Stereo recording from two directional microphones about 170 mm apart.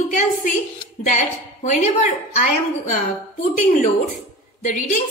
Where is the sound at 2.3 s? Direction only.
50° left (ahead or behind).